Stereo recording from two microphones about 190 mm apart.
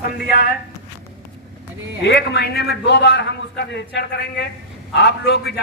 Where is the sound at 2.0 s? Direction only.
60° left (ahead or behind).